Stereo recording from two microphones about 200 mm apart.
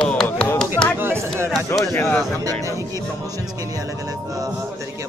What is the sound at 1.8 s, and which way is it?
Speech, 15° left (ahead or behind).